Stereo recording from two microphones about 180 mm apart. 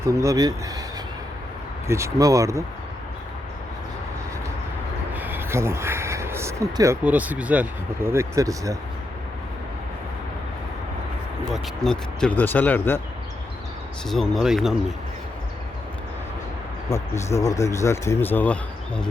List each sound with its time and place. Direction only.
0.0 s speech: 15° right (ahead or behind)
1.9 s speech: 15° right (ahead or behind)
5.1 s speech: 10° right (ahead or behind)
11.5 s speech: centre (ahead or behind)
14.1 s speech: centre (ahead or behind)
16.9 s speech: 15° left (ahead or behind)